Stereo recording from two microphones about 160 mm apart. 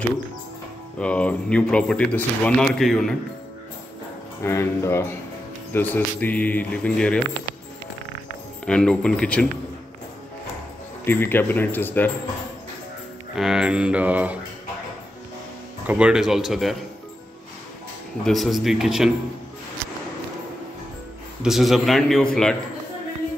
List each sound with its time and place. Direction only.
0.9 s speech: 5° left (ahead or behind)
4.4 s speech: 15° left (ahead or behind)
8.6 s a man's voice: 5° left (ahead or behind)
11.1 s speech: 15° left (ahead or behind)
13.4 s mantra: 5° right (ahead or behind)
15.9 s a man's voice: 5° right (ahead or behind)
18.2 s a man's voice: centre (ahead or behind)
21.4 s a man's voice: centre (ahead or behind)